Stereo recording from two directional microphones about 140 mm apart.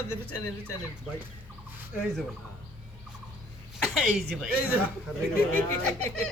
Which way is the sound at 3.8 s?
5° left (ahead or behind).